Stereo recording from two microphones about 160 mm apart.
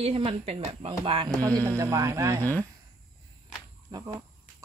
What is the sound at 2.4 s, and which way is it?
Speech, 10° left (ahead or behind).